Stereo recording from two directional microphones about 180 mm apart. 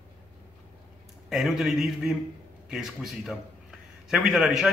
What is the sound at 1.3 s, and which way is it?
A man's voice, centre (ahead or behind).